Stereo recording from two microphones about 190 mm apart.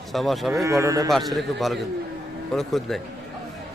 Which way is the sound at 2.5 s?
Centre (ahead or behind).